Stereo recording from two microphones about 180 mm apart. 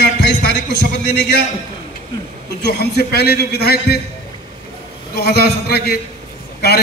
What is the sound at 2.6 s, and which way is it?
A man's voice, 65° left (ahead or behind).